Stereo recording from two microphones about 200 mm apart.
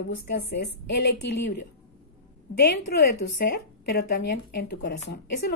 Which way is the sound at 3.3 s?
55° left (ahead or behind).